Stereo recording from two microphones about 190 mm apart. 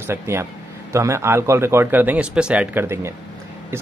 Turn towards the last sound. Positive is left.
turn(degrees=-15)  # may be behind; listen again after turning